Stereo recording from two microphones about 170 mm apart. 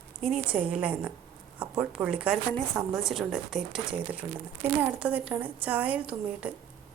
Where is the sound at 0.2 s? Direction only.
5° right (ahead or behind).